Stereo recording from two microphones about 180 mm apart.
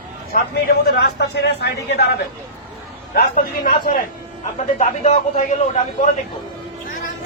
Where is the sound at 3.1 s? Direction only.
55° left (ahead or behind).